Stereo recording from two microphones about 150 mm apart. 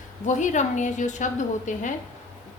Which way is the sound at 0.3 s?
55° left (ahead or behind).